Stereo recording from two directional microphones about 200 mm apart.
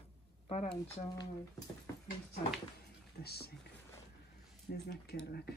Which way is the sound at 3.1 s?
55° left (ahead or behind).